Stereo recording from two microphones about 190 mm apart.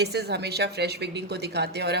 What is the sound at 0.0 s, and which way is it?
Speech, 60° right (ahead or behind).